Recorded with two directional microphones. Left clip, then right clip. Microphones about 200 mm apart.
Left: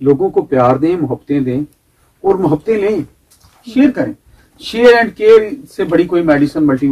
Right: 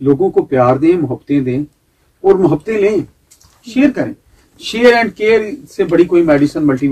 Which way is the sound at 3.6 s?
25° right (ahead or behind).